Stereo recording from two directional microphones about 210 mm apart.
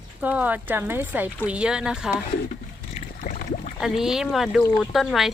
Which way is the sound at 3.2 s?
40° left (ahead or behind).